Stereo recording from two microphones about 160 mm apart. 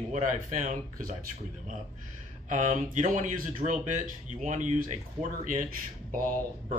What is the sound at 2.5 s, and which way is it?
A man's voice, 50° right (ahead or behind).